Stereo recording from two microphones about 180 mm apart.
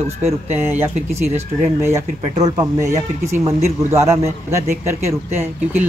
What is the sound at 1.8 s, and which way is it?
Speech, 20° right (ahead or behind).